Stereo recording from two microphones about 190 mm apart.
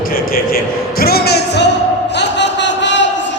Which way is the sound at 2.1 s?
65° left (ahead or behind).